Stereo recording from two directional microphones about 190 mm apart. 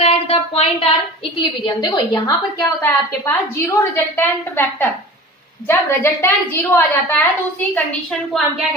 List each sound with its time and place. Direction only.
0.0 s a sound: 30° left (ahead or behind)
1.4 s a woman's voice: 20° left (ahead or behind)
7.7 s a woman's voice: centre (ahead or behind)